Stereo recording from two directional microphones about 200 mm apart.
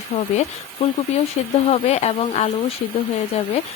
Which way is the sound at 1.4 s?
35° left (ahead or behind).